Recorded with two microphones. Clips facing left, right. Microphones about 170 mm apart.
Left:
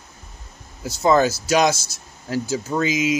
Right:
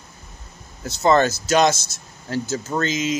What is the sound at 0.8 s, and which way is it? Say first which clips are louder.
Speech: even; 5° left (ahead or behind).